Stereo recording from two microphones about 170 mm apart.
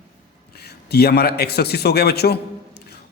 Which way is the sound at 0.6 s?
70° left (ahead or behind).